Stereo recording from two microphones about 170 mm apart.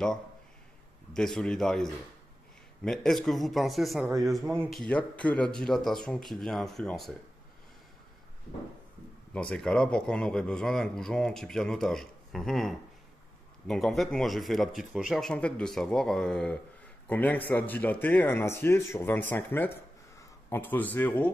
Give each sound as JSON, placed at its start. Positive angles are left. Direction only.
{"t": 1.1, "sound": "a man's voice", "side_deg": 5}
{"t": 4.0, "sound": "a man's voice", "side_deg": -20}
{"t": 4.3, "sound": "a man's voice", "side_deg": 0}
{"t": 9.3, "sound": "a man's voice", "side_deg": 5}